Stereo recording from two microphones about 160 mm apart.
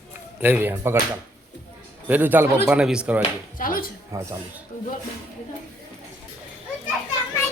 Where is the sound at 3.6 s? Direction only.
60° left (ahead or behind).